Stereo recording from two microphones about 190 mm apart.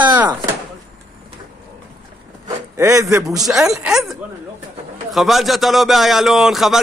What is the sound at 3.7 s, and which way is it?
A man's voice, centre (ahead or behind).